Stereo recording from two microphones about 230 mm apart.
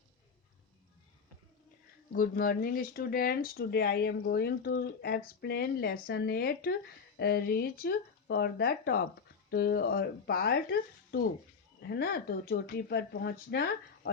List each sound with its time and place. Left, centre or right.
2.1 s speech: left